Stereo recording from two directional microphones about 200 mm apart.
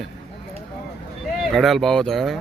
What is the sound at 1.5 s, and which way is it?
Speech, centre (ahead or behind).